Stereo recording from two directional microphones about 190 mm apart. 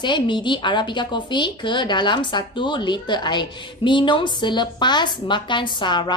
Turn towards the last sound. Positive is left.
turn(degrees=25)  # may be behind; listen again after turning